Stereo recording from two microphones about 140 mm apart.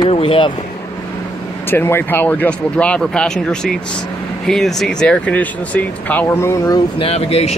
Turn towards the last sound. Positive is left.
turn(degrees=50)  # may be behind; listen again after turning